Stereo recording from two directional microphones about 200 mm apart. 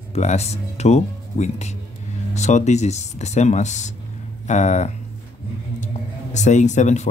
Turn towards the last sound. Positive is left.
turn(degrees=35)  # may be behind; listen again after turning